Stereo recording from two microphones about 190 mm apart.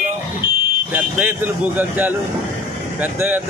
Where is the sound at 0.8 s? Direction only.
10° right (ahead or behind).